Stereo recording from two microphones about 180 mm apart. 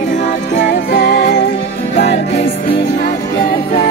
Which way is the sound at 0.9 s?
65° left (ahead or behind).